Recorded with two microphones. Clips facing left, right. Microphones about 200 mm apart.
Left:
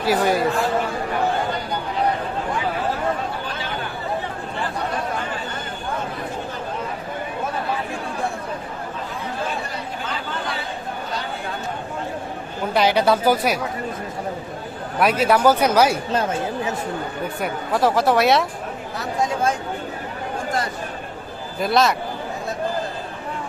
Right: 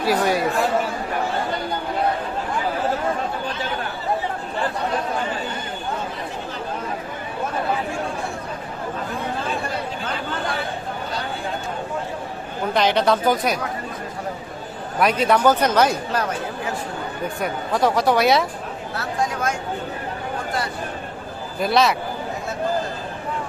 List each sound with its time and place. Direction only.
0.0 s speech: centre (ahead or behind)
12.7 s speech: 5° left (ahead or behind)
14.9 s speech: 5° left (ahead or behind)
17.4 s speech: centre (ahead or behind)
18.9 s speech: 25° left (ahead or behind)
21.6 s speech: centre (ahead or behind)